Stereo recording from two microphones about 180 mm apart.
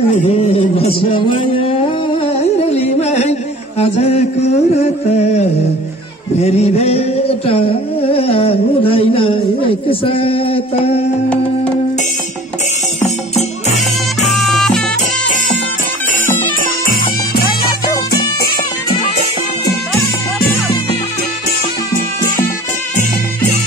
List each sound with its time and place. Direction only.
0.3 s a sound: 35° left (ahead or behind)
13.0 s music: 40° left (ahead or behind)
14.3 s music: centre (ahead or behind)